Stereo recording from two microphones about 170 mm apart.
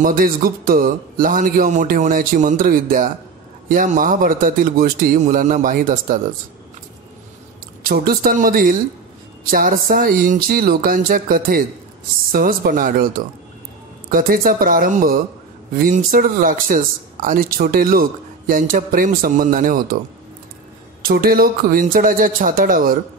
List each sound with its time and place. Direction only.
0.0 s a man's voice: 55° right (ahead or behind)
7.8 s speech: 60° right (ahead or behind)
14.1 s speech: 55° right (ahead or behind)
21.0 s speech: 60° right (ahead or behind)